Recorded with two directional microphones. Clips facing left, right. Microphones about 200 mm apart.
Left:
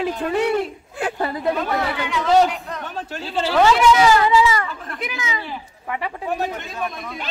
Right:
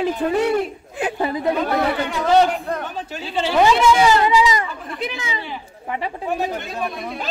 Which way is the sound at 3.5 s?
20° right (ahead or behind).